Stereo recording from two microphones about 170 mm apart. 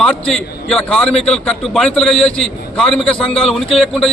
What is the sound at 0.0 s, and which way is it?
A man's voice, 5° left (ahead or behind).